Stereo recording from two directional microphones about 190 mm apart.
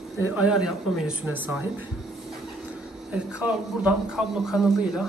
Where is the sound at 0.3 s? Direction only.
5° right (ahead or behind).